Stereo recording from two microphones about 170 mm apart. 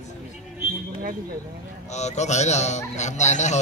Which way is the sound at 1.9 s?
40° left (ahead or behind).